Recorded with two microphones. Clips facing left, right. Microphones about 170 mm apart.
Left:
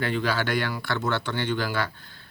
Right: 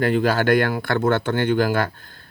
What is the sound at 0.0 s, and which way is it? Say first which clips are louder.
Speech: right 7 dB; 45° right (ahead or behind).